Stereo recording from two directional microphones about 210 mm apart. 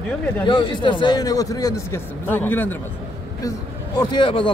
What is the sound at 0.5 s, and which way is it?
A man's voice, 20° left (ahead or behind).